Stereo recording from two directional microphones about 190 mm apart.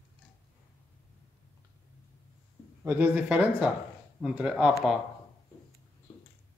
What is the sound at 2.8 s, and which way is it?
A man's voice, 10° right (ahead or behind).